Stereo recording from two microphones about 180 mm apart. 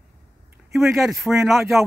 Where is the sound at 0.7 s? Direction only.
Centre (ahead or behind).